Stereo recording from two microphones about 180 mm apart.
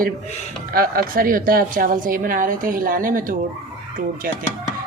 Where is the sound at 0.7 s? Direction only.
55° right (ahead or behind).